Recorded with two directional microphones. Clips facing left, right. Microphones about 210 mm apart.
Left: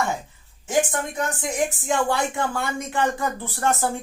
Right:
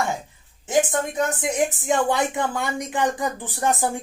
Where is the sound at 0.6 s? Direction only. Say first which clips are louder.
Right 2 dB; 20° right (ahead or behind).